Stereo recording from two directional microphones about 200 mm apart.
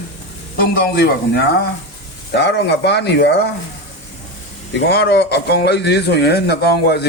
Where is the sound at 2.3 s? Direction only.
55° left (ahead or behind).